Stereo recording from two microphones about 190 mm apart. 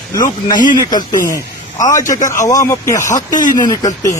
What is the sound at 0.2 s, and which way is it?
Speech, 20° left (ahead or behind).